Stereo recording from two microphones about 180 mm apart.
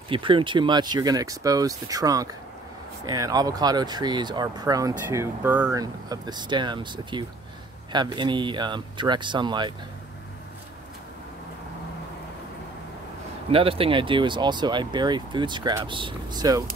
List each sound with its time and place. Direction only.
0.1 s speech: 30° right (ahead or behind); by 5.8 s 10° right (ahead or behind)
5.8 s speech: 20° right (ahead or behind)
13.5 s speech: 30° right (ahead or behind)